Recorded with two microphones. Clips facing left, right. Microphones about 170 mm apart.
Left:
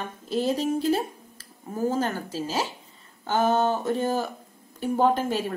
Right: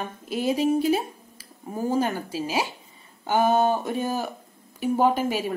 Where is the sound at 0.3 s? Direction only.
10° right (ahead or behind).